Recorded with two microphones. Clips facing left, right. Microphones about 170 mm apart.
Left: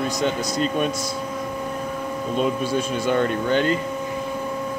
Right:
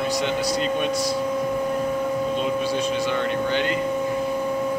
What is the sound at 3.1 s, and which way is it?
Speech, 40° left (ahead or behind).